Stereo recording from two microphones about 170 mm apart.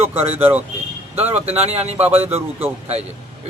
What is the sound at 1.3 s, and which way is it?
Speech, 40° right (ahead or behind).